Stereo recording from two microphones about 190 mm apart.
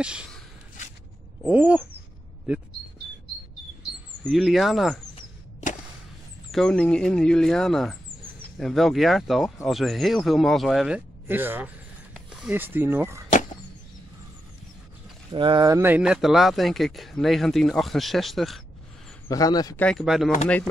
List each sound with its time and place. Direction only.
0.0 s a sound: 5° right (ahead or behind)
1.5 s a sound: 10° right (ahead or behind)
4.2 s speech: centre (ahead or behind)
6.5 s speech: 5° left (ahead or behind)
11.2 s speech: 10° right (ahead or behind)
15.3 s speech: 25° right (ahead or behind); by 18.6 s centre (ahead or behind)
19.2 s a man's voice: 20° left (ahead or behind)
19.8 s speech: centre (ahead or behind)